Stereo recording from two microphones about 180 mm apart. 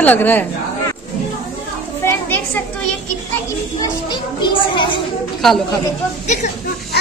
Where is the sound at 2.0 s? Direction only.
10° left (ahead or behind).